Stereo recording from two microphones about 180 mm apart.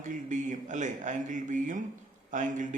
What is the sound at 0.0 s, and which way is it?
A man's voice, 45° right (ahead or behind).